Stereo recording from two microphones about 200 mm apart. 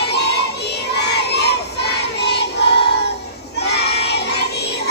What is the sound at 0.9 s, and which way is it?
Child singing, 55° left (ahead or behind).